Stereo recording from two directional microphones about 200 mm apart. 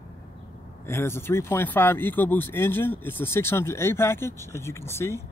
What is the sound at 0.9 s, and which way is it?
Speech, 10° left (ahead or behind).